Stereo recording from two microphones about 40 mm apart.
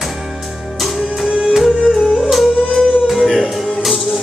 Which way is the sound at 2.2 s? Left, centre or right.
Centre.